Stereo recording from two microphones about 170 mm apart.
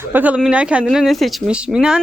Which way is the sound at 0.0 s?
10° right (ahead or behind).